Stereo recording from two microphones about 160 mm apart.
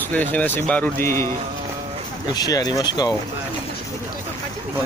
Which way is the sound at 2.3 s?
25° left (ahead or behind).